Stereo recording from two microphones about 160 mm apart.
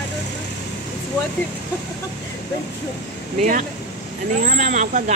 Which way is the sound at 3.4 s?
50° right (ahead or behind).